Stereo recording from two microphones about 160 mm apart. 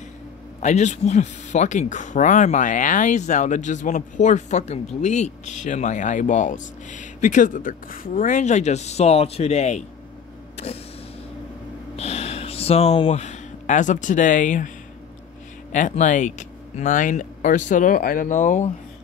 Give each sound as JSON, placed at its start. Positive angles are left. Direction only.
{"t": 0.6, "sound": "speech", "side_deg": 45}
{"t": 12.0, "sound": "a sound", "side_deg": 40}
{"t": 15.7, "sound": "speech", "side_deg": 50}